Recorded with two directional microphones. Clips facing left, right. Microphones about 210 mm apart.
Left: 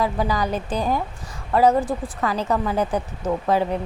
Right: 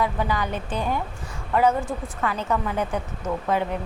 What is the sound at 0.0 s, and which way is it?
Speech, 35° left (ahead or behind).